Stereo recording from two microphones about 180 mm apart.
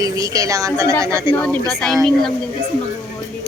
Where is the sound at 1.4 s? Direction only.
10° left (ahead or behind).